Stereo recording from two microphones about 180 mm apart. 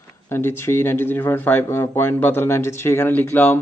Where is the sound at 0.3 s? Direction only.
15° left (ahead or behind).